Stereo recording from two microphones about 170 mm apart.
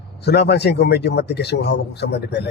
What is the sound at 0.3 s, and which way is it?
A man's voice, 75° left (ahead or behind).